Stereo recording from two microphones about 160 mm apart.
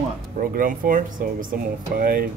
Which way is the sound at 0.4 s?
60° right (ahead or behind).